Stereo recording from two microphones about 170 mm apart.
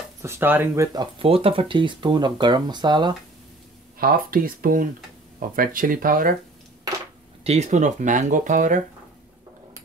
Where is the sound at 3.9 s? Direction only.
55° right (ahead or behind).